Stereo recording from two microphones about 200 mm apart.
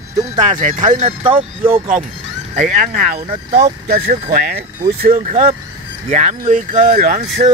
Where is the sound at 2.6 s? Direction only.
40° right (ahead or behind).